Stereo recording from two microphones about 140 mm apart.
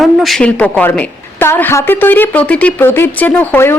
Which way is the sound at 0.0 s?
Centre (ahead or behind).